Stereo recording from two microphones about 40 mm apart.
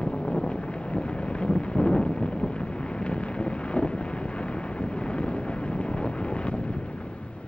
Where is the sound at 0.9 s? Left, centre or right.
Left.